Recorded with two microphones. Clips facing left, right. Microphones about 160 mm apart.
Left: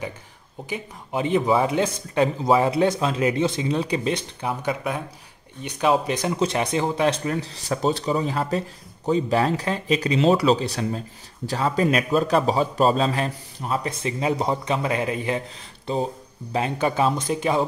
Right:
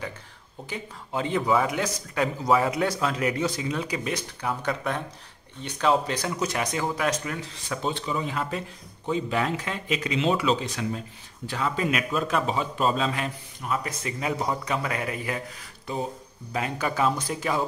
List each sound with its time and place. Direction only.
0.7 s speech: 15° left (ahead or behind)